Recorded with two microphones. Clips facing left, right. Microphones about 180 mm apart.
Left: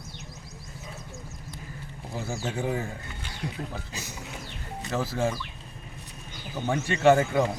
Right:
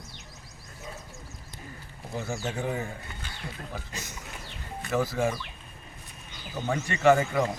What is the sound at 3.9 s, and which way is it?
Speech, 10° left (ahead or behind).